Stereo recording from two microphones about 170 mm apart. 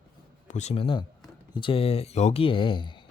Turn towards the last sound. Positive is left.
turn(degrees=30)  # may be behind; listen again after turning